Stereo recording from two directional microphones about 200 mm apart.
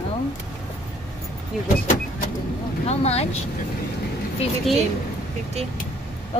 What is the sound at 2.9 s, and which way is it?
Speech, 30° left (ahead or behind).